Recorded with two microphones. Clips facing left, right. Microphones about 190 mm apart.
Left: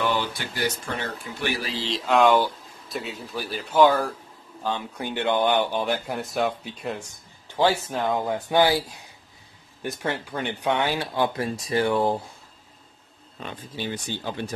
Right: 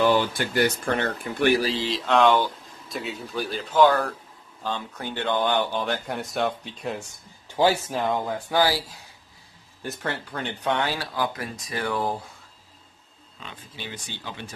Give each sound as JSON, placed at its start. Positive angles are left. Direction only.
{"t": 0.0, "sound": "speech", "side_deg": -45}
{"t": 1.9, "sound": "speech", "side_deg": 0}
{"t": 6.0, "sound": "speech", "side_deg": 0}
{"t": 8.3, "sound": "speech", "side_deg": 20}
{"t": 13.4, "sound": "speech", "side_deg": 45}